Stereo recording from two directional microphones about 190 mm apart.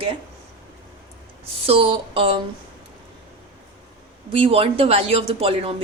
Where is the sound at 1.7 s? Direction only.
30° right (ahead or behind).